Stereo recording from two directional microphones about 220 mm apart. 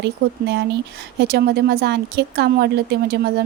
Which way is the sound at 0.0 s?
50° right (ahead or behind).